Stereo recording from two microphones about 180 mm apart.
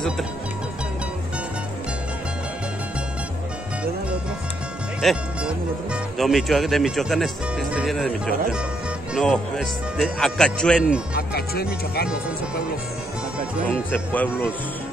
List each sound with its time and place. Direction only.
5.0 s speech: centre (ahead or behind)
9.1 s speech: centre (ahead or behind)
11.1 s speech: 60° left (ahead or behind)
13.7 s speech: 10° left (ahead or behind)